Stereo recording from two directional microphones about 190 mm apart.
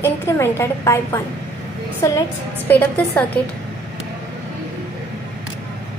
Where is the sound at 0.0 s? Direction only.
15° left (ahead or behind).